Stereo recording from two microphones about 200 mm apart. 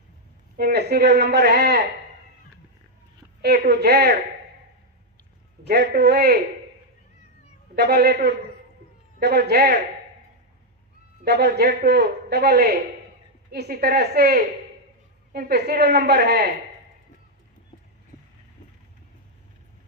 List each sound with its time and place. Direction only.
0.5 s a woman's voice: 50° right (ahead or behind)
3.4 s a woman's voice: 50° right (ahead or behind)
5.6 s a man's voice: 55° right (ahead or behind)
7.8 s a woman's voice: 50° right (ahead or behind)
11.3 s a woman's voice: 55° right (ahead or behind)